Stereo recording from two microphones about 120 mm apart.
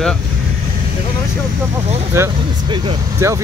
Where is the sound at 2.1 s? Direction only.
25° right (ahead or behind).